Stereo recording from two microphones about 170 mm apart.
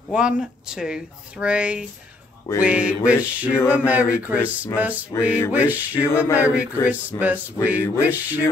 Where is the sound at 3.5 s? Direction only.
15° left (ahead or behind).